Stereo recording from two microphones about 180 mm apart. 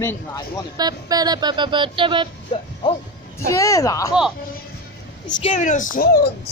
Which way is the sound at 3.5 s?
15° left (ahead or behind).